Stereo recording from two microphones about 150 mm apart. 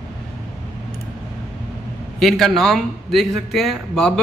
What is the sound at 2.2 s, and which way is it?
A man's voice, centre (ahead or behind).